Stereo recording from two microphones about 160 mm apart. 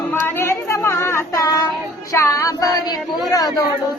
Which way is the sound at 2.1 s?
20° left (ahead or behind).